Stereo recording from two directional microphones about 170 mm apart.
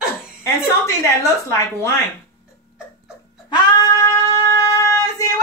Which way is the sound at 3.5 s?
20° left (ahead or behind).